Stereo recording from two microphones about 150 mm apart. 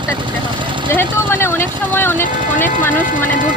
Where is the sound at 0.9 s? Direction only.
15° left (ahead or behind).